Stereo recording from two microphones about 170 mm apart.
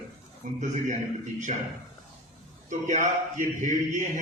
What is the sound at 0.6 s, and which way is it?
Speech, 45° right (ahead or behind).